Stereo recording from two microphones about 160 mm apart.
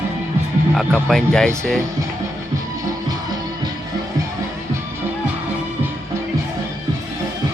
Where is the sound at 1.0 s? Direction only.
5° left (ahead or behind).